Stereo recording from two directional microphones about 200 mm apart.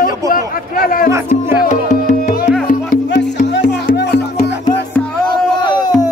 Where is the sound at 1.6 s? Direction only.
40° left (ahead or behind).